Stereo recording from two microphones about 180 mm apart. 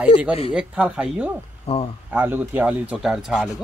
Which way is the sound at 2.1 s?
10° right (ahead or behind).